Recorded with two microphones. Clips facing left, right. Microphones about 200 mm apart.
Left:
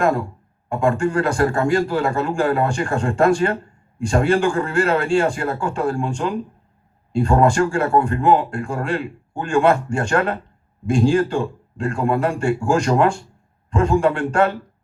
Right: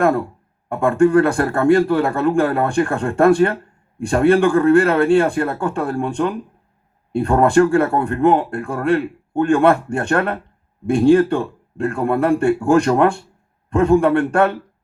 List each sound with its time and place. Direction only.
0.0 s speech: 55° right (ahead or behind)